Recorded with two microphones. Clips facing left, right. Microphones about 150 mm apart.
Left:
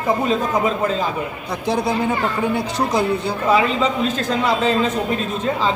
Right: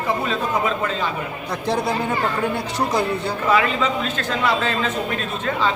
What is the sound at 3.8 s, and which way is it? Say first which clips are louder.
A man's voice: left 3 dB; 35° left (ahead or behind).